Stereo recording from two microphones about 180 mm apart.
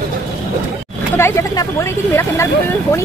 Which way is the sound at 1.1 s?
15° left (ahead or behind).